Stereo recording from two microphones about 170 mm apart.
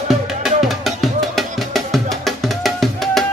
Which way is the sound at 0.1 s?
Centre (ahead or behind).